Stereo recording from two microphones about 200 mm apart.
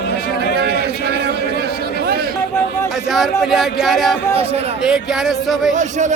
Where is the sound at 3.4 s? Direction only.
Centre (ahead or behind).